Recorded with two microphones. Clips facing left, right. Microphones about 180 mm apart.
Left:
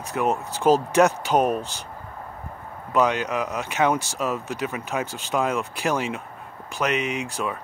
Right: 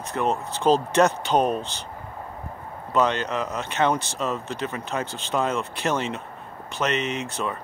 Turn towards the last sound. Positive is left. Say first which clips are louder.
# left 1 dB
turn(degrees=0)  # may be behind; listen again after turning